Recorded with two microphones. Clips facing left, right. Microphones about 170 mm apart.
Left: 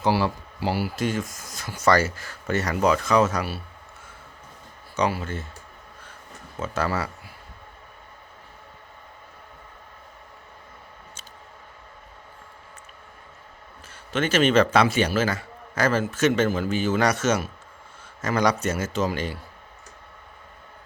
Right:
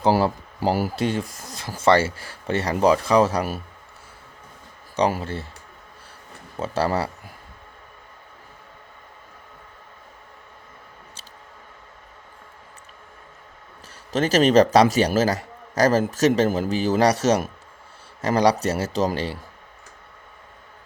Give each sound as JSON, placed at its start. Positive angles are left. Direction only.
{"t": 0.1, "sound": "a man's voice", "side_deg": -40}
{"t": 4.9, "sound": "a man's voice", "side_deg": -35}
{"t": 6.6, "sound": "a man's voice", "side_deg": -35}
{"t": 14.1, "sound": "a man's voice", "side_deg": -40}